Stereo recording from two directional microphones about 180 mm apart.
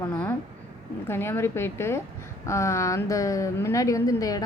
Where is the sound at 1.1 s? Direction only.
15° left (ahead or behind).